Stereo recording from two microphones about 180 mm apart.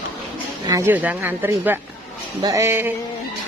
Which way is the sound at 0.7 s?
15° right (ahead or behind).